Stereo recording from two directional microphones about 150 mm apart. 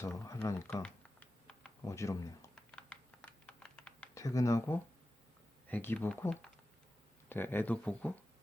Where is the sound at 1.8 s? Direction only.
20° left (ahead or behind).